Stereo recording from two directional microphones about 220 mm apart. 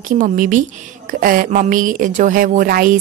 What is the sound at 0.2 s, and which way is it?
Speech, 35° right (ahead or behind).